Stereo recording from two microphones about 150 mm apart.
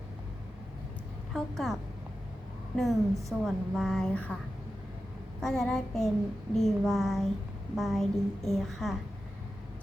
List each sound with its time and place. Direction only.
1.3 s a woman's voice: centre (ahead or behind)
5.4 s a woman's voice: 5° left (ahead or behind)